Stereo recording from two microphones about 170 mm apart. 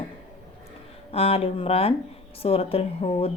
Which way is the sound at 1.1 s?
35° left (ahead or behind).